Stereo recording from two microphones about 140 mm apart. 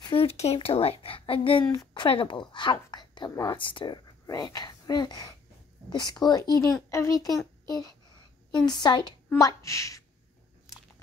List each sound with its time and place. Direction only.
0.0 s a child's voice: 40° left (ahead or behind); by 10.0 s 20° left (ahead or behind)